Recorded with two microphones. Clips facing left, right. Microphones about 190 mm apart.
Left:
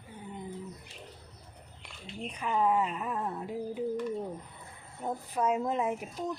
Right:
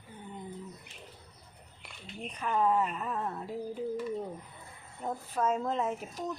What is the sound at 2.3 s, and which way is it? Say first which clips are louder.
Speech: even; 10° left (ahead or behind).